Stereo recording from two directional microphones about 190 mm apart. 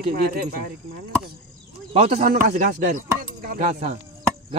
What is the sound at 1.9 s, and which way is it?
Speech, 40° right (ahead or behind).